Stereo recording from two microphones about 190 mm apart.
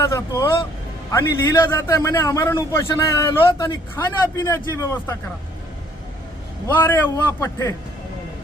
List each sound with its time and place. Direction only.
0.0 s a man's voice: 15° left (ahead or behind)
6.7 s a man's voice: 10° left (ahead or behind)